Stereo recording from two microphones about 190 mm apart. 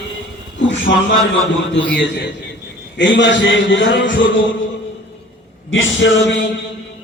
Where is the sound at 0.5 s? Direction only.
75° left (ahead or behind).